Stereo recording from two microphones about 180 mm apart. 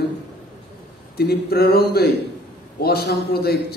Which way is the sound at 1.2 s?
60° left (ahead or behind).